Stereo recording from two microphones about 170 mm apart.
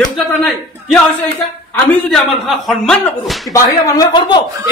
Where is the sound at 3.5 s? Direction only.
20° left (ahead or behind).